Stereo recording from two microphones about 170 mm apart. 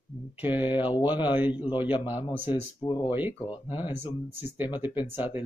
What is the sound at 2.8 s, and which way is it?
Speech, 25° left (ahead or behind).